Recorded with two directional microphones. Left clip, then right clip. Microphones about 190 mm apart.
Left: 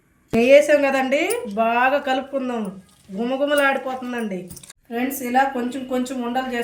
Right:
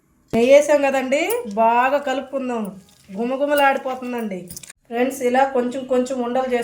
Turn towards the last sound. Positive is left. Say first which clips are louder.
# right 4 dB
turn(degrees=-20)  # may be behind; listen again after turning